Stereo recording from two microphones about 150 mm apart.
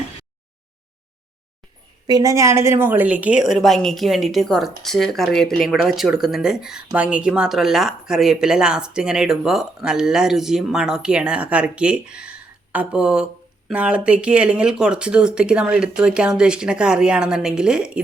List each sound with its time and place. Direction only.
2.0 s a woman's voice: 25° right (ahead or behind); by 18.0 s 5° right (ahead or behind)